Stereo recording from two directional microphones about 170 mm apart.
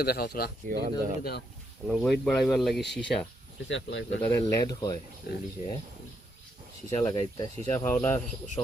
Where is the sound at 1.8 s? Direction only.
Centre (ahead or behind).